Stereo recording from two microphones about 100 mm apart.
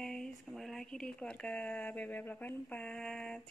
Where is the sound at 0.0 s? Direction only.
5° left (ahead or behind).